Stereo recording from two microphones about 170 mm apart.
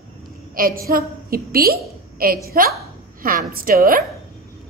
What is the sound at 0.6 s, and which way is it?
A woman's voice, 55° right (ahead or behind).